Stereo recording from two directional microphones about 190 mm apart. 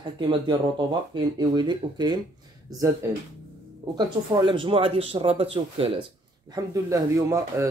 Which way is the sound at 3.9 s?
25° right (ahead or behind).